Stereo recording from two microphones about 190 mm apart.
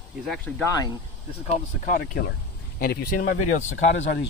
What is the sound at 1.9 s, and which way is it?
Speech, 45° left (ahead or behind).